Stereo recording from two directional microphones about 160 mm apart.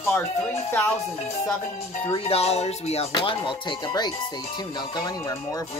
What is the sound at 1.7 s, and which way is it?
Speech, 40° left (ahead or behind).